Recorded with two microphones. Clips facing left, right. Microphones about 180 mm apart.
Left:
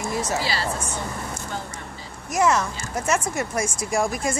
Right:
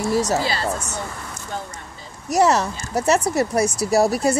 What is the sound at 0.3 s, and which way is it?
Speech, 50° right (ahead or behind).